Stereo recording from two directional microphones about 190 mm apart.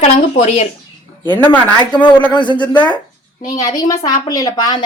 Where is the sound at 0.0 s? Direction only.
35° left (ahead or behind).